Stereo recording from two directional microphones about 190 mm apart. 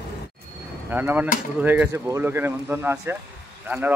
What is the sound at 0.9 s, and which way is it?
Speech, 10° right (ahead or behind).